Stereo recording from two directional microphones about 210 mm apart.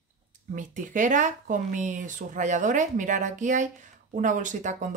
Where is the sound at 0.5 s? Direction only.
40° right (ahead or behind).